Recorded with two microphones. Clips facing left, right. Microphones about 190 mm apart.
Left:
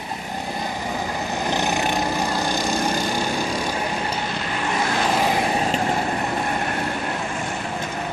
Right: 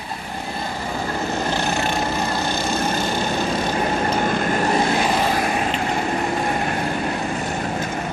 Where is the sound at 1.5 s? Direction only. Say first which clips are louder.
Even; 15° left (ahead or behind).